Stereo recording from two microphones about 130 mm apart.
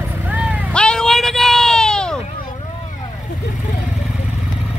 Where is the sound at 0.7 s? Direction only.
5° left (ahead or behind).